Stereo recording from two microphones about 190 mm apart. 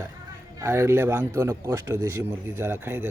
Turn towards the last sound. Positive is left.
turn(degrees=-10)  # may be behind; listen again after turning